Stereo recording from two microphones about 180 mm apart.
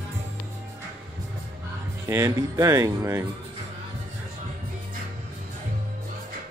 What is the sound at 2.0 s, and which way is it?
Speech, 15° right (ahead or behind).